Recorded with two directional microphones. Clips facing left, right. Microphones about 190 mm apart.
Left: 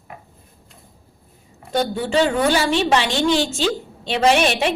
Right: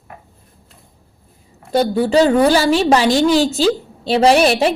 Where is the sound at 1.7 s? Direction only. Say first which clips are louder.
Right 6 dB; 35° right (ahead or behind).